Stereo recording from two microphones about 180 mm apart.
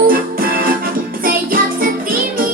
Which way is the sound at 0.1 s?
55° right (ahead or behind).